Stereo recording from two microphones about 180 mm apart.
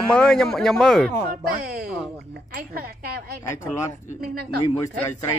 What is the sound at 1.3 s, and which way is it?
A woman's voice, 60° right (ahead or behind).